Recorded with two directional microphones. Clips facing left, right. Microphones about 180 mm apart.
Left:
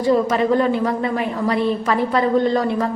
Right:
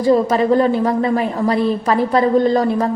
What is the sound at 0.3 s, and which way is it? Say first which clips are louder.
A woman's voice: right 3 dB; 35° right (ahead or behind).